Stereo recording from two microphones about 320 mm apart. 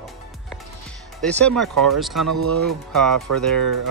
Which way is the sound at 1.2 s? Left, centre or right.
Centre.